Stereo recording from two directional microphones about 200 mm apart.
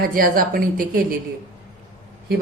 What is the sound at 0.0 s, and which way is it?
Speech, 45° right (ahead or behind).